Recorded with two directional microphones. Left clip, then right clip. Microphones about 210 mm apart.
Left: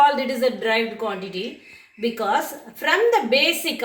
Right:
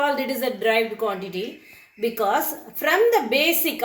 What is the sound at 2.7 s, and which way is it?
A woman's voice, 45° right (ahead or behind).